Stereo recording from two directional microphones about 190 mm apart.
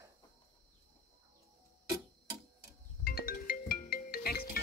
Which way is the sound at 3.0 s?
50° left (ahead or behind).